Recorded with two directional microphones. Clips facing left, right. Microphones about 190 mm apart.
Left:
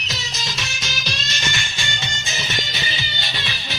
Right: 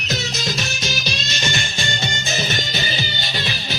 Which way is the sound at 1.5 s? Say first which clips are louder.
Right 5 dB; 40° right (ahead or behind).